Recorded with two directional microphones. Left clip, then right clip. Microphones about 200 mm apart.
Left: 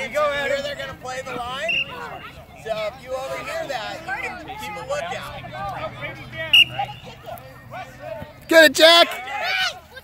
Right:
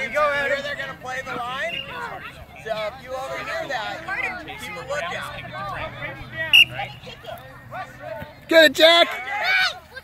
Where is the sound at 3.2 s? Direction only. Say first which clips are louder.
Right 2 dB; centre (ahead or behind).